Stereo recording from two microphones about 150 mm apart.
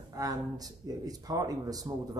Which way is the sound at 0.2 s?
25° right (ahead or behind).